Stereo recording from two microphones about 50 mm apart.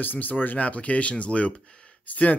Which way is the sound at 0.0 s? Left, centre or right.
Left.